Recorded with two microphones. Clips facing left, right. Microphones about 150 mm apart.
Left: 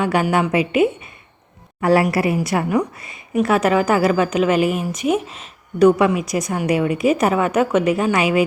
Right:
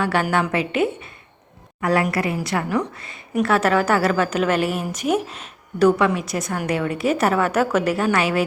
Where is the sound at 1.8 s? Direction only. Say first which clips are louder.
Left 4 dB; 30° left (ahead or behind).